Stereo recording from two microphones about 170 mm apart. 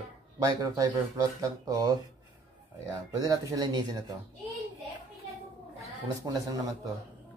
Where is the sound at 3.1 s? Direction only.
20° right (ahead or behind).